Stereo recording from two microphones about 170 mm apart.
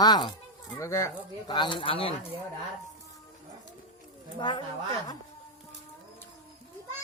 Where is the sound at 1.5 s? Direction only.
30° left (ahead or behind).